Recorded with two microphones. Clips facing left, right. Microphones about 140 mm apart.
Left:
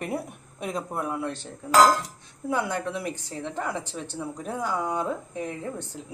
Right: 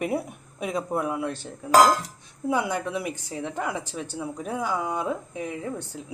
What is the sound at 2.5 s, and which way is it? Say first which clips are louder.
A woman's voice: right 2 dB; 10° right (ahead or behind).